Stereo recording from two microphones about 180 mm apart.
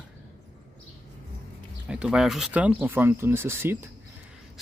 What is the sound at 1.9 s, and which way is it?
Speech, 5° right (ahead or behind).